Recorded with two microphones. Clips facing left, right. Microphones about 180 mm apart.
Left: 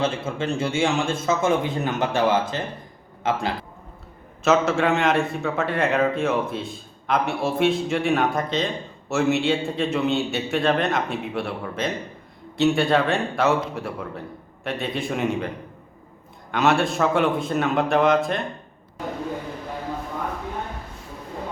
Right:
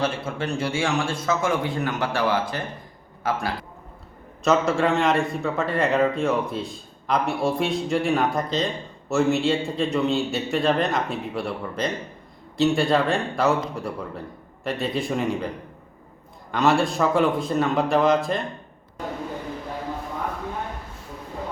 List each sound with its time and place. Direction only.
0.0 s speech: 25° left (ahead or behind)
4.4 s a man's voice: centre (ahead or behind)
16.5 s a man's voice: centre (ahead or behind)